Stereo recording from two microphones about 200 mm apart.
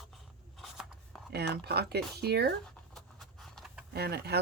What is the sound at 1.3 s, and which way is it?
Speech, 55° right (ahead or behind).